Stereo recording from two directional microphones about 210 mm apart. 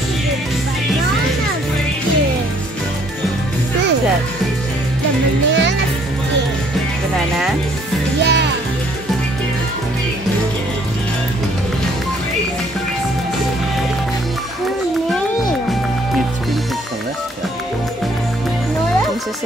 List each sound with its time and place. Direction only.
5.5 s music: 55° right (ahead or behind)
8.2 s music: 55° right (ahead or behind)